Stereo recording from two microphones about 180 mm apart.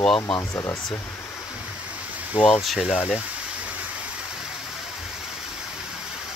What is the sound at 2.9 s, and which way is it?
Speech, 10° left (ahead or behind).